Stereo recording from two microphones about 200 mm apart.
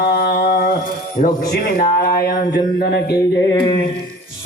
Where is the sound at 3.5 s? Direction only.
25° left (ahead or behind).